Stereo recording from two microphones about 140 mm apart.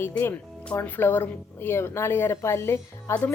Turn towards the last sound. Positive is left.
turn(degrees=15)  # may be behind; listen again after turning